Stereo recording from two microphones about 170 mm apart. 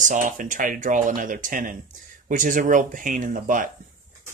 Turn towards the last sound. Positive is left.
turn(degrees=-50)  # may be behind; listen again after turning